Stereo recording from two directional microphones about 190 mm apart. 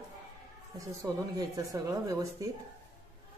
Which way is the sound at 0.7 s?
20° right (ahead or behind).